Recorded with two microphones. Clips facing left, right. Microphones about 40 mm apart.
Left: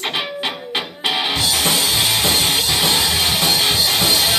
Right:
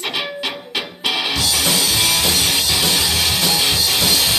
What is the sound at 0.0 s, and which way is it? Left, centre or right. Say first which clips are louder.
Music: left 1 dB; left.